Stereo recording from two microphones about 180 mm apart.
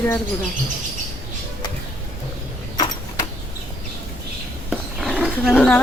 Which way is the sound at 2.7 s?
20° left (ahead or behind).